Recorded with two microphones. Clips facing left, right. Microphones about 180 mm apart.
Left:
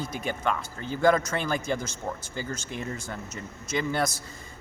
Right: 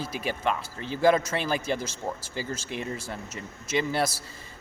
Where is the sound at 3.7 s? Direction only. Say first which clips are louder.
Right 1 dB; 25° right (ahead or behind).